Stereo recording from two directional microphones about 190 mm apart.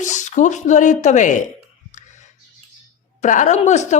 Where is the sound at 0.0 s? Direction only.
40° left (ahead or behind).